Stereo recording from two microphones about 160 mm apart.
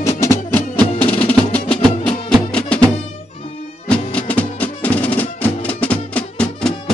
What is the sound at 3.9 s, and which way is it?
Music, 10° left (ahead or behind).